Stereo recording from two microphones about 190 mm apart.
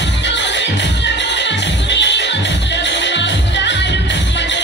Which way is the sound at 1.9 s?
65° left (ahead or behind).